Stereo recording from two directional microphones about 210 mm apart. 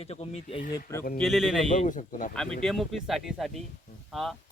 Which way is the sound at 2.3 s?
Centre (ahead or behind).